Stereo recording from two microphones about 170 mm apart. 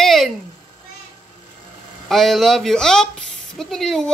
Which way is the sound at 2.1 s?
Centre (ahead or behind).